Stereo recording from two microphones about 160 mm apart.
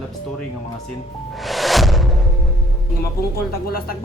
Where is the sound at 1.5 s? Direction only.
Centre (ahead or behind).